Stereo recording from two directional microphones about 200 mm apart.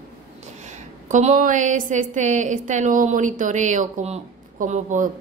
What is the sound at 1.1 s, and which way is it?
A woman's voice, 40° right (ahead or behind).